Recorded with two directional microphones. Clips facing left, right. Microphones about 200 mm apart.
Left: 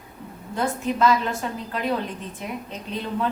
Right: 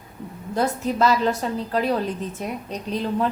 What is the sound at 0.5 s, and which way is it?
A woman's voice, 40° right (ahead or behind).